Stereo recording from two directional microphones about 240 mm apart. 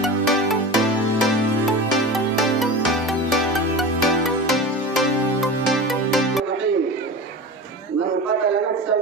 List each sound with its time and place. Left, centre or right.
0.0 s music: centre